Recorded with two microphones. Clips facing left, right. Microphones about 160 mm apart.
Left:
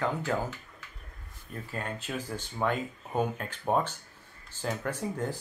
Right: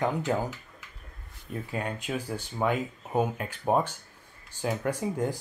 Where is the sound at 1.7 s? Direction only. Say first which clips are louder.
Right 3 dB; 10° right (ahead or behind).